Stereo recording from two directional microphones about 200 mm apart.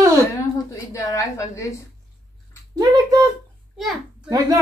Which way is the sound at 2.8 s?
15° right (ahead or behind).